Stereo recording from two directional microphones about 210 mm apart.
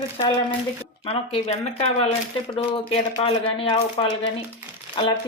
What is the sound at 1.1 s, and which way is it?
Speech, 30° left (ahead or behind).